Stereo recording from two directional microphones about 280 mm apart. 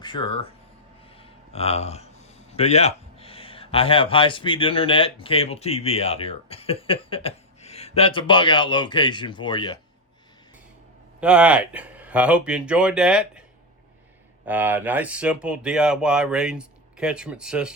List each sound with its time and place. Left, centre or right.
0.0 s speech: centre
1.2 s a sound: left
2.5 s speech: left
11.2 s speech: centre
14.4 s speech: centre